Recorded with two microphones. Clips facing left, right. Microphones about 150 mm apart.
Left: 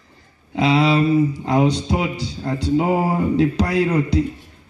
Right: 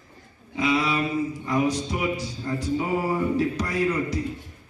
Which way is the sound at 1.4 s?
75° left (ahead or behind).